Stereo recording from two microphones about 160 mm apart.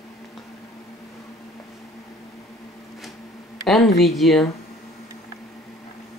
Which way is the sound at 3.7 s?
Centre (ahead or behind).